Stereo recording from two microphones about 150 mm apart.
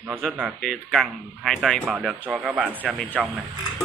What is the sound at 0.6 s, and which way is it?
Speech, 5° left (ahead or behind).